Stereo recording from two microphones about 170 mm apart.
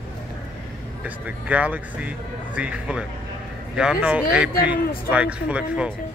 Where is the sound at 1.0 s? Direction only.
10° right (ahead or behind).